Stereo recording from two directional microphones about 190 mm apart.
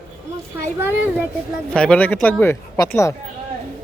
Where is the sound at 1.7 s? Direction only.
5° left (ahead or behind).